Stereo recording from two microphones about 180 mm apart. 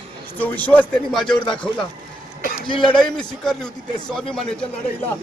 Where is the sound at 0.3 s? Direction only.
10° left (ahead or behind).